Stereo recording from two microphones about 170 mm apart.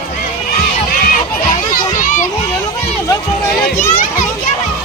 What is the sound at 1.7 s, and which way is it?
Children playing, 55° left (ahead or behind).